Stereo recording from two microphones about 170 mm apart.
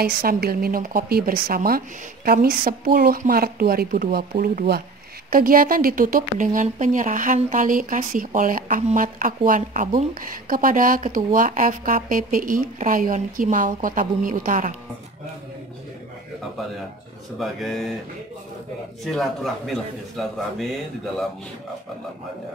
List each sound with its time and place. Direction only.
0.0 s a woman's voice: 65° right (ahead or behind)
17.4 s a man's voice: centre (ahead or behind)
19.0 s a man's voice: centre (ahead or behind)